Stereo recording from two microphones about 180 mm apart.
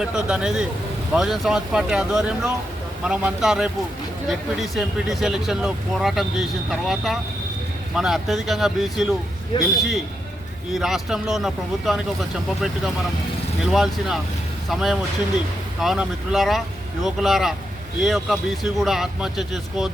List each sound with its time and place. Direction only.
0.0 s speech: 5° right (ahead or behind)
9.5 s a man's voice: 25° left (ahead or behind)
10.8 s speech: centre (ahead or behind)
13.7 s speech: centre (ahead or behind)